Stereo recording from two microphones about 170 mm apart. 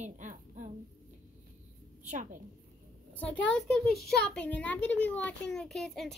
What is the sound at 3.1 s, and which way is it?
A child's voice, 10° left (ahead or behind).